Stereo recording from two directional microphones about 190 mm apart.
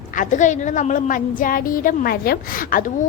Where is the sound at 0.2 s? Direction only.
40° left (ahead or behind).